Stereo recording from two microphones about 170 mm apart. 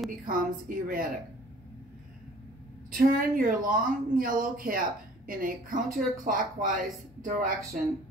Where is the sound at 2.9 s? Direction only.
55° right (ahead or behind).